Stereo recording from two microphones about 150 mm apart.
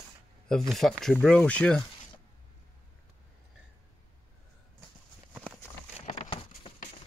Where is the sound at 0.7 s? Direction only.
Centre (ahead or behind).